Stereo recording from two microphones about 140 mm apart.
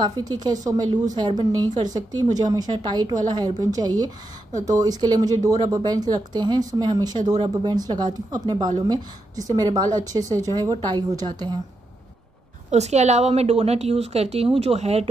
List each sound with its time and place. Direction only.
0.0 s speech: 25° right (ahead or behind)
12.7 s a woman's voice: 55° right (ahead or behind)